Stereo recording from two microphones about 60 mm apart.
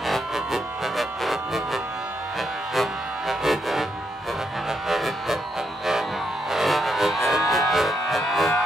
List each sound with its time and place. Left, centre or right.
0.0 s music: centre
6.5 s music: centre